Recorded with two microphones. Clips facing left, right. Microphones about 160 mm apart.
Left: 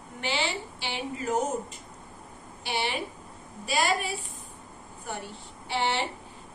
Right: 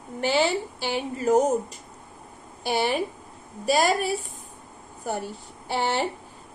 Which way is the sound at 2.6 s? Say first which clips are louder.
Right 7 dB; 45° right (ahead or behind).